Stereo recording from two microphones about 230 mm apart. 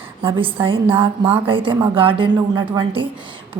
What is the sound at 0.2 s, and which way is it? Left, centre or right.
A woman's voice, right.